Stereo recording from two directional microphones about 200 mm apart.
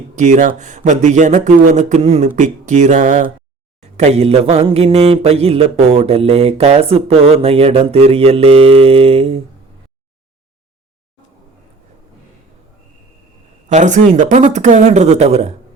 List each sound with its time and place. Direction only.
0.2 s speech: 40° right (ahead or behind)
3.8 s a sound: 35° right (ahead or behind)
13.7 s speech: 35° right (ahead or behind)